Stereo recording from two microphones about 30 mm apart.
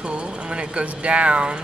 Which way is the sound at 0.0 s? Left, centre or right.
Right.